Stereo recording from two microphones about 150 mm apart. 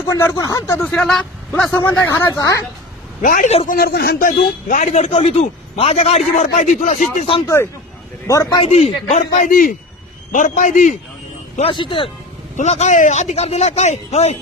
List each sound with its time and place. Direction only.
0.1 s a man's voice: 20° left (ahead or behind)
3.2 s a man's voice: 60° left (ahead or behind)
3.7 s a man's voice: 90° left; by 7.3 s 55° left (ahead or behind)
7.4 s speech: 20° left (ahead or behind)
8.6 s a man's voice: 45° left (ahead or behind)
11.7 s a man's voice: 35° left (ahead or behind)
12.5 s a man's voice: 45° left (ahead or behind)